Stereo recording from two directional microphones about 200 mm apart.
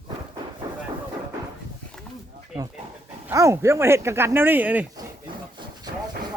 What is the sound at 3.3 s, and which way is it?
Speech, 15° right (ahead or behind).